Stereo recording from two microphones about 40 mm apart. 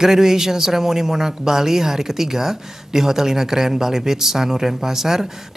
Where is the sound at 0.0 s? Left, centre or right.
Centre.